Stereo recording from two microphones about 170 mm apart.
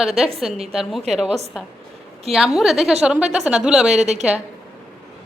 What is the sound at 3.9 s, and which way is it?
Speech, 40° right (ahead or behind).